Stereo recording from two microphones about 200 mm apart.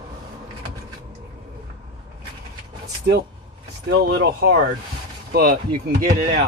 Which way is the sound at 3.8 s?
55° right (ahead or behind).